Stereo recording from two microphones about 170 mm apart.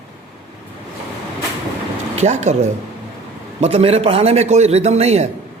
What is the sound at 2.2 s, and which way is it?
A man's voice, 40° right (ahead or behind).